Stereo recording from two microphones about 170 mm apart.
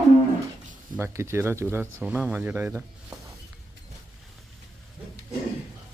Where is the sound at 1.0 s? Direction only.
15° right (ahead or behind).